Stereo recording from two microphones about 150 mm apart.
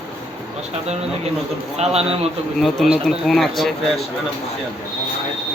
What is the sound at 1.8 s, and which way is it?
Speech, 45° right (ahead or behind).